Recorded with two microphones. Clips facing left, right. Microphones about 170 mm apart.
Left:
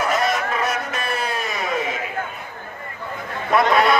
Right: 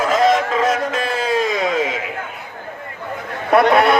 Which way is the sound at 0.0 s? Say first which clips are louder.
Right 6 dB; 90° right.